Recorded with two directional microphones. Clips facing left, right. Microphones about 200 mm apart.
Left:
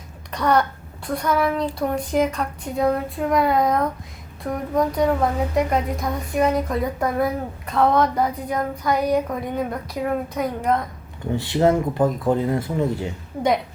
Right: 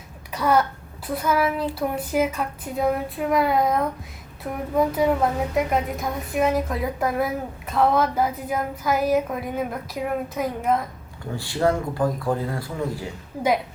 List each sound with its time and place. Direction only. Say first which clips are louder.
0.3 s a woman's voice: left 1 dB; 5° right (ahead or behind)
11.3 s speech: left 4 dB; 20° left (ahead or behind)